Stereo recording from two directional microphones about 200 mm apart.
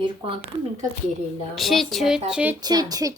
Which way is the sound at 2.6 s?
20° right (ahead or behind).